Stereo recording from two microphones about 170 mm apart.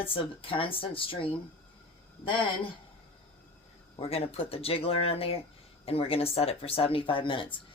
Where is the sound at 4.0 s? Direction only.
35° left (ahead or behind).